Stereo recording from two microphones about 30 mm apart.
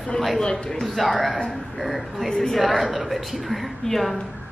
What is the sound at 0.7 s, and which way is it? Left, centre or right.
Speech, centre.